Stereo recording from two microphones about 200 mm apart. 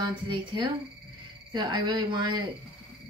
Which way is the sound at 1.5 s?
20° right (ahead or behind).